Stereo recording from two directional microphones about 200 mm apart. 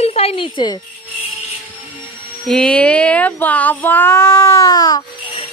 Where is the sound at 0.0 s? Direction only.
30° left (ahead or behind).